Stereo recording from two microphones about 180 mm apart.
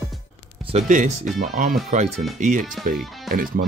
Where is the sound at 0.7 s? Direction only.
40° right (ahead or behind).